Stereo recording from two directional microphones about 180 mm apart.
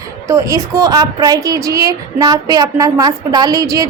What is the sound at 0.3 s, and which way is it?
A woman's voice, 15° right (ahead or behind).